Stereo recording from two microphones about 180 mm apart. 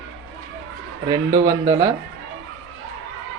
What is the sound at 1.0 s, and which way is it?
Speech, 20° right (ahead or behind).